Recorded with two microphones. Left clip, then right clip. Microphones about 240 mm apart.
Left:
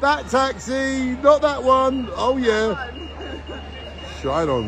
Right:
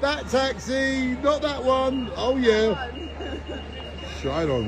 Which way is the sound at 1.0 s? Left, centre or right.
Left.